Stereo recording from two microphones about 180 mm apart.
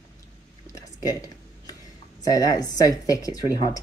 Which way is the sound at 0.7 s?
20° left (ahead or behind).